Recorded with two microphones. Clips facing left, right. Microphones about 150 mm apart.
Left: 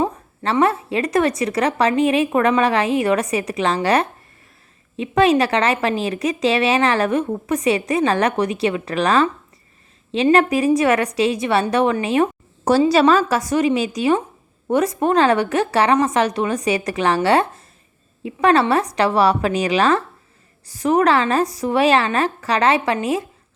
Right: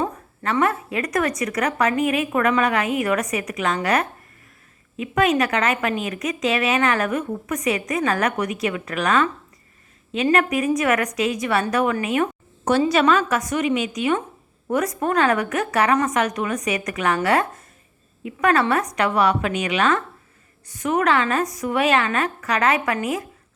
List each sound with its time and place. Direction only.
0.0 s a woman's voice: 25° left (ahead or behind)